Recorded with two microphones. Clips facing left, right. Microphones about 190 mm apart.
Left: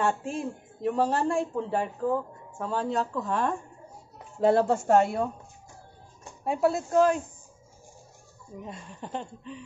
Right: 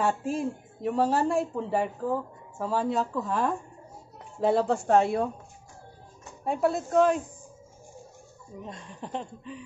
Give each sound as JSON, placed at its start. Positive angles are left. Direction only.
{"t": 0.0, "sound": "a woman's voice", "side_deg": 0}
{"t": 6.4, "sound": "a woman's voice", "side_deg": 0}
{"t": 8.6, "sound": "a woman's voice", "side_deg": 0}